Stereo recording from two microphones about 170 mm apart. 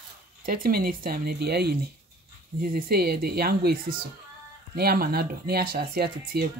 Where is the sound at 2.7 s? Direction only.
65° right (ahead or behind).